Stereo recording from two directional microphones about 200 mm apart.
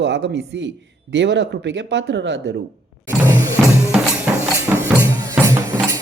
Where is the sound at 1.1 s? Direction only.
60° right (ahead or behind).